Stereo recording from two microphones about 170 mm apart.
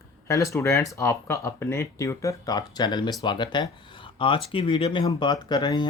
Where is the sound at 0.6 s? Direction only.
20° left (ahead or behind).